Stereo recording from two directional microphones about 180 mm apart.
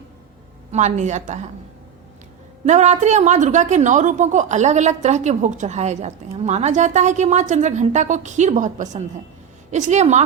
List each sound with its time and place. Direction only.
0.7 s a woman's voice: 40° right (ahead or behind)
2.6 s a woman's voice: 40° right (ahead or behind)